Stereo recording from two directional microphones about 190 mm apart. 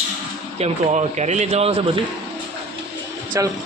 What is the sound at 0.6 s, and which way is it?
Speech, 35° right (ahead or behind).